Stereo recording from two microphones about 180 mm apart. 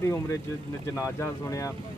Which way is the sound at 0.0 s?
15° left (ahead or behind).